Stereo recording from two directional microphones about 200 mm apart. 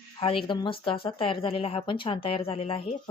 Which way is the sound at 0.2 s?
25° left (ahead or behind).